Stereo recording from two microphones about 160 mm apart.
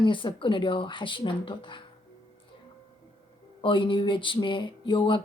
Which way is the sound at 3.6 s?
30° left (ahead or behind).